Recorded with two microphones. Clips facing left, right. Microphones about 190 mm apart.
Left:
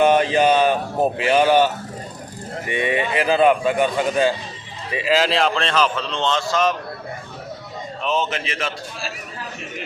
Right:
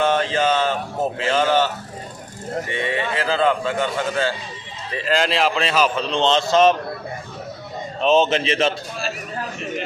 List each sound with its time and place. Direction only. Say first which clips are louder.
0.0 s a man's voice: left 4 dB; 15° left (ahead or behind); by 6.7 s 25° right (ahead or behind)
8.0 s a man's voice: right 7 dB; 25° right (ahead or behind)